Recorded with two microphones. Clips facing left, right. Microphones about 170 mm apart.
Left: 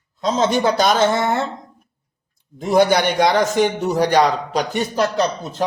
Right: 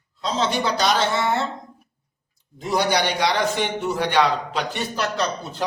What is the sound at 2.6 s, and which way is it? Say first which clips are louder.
A man's voice: left 6 dB; 50° left (ahead or behind).